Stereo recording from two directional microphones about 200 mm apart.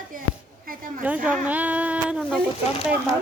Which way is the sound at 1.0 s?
5° right (ahead or behind).